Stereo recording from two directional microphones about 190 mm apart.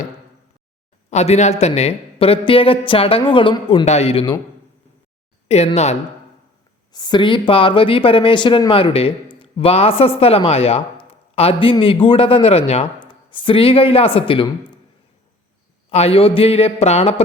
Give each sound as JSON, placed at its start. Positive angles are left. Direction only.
{"t": 1.1, "sound": "speech", "side_deg": 35}
{"t": 5.5, "sound": "speech", "side_deg": 35}
{"t": 6.9, "sound": "speech", "side_deg": 25}
{"t": 15.9, "sound": "speech", "side_deg": 30}